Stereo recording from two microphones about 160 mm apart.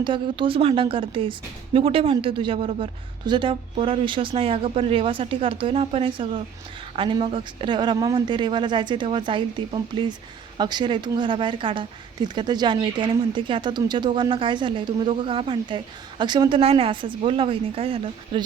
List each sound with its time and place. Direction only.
0.0 s speech: 30° right (ahead or behind)